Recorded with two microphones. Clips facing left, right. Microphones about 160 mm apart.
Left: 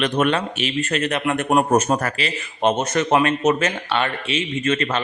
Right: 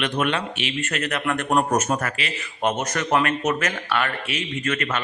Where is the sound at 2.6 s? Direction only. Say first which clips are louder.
Left 5 dB; 25° left (ahead or behind).